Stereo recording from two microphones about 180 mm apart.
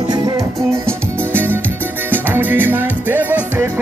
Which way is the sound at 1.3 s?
10° right (ahead or behind).